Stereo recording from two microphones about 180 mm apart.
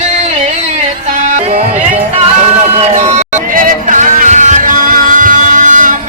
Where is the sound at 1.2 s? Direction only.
45° right (ahead or behind).